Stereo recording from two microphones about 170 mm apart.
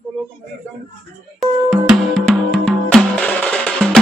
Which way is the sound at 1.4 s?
Centre (ahead or behind).